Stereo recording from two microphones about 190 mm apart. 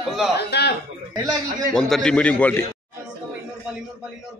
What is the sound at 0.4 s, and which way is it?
Speech, 60° left (ahead or behind).